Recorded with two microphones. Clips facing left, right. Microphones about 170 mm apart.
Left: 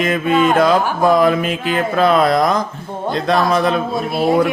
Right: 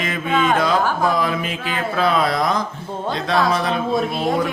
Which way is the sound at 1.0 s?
50° left (ahead or behind).